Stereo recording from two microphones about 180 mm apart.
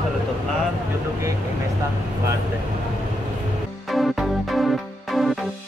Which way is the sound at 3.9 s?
Centre (ahead or behind).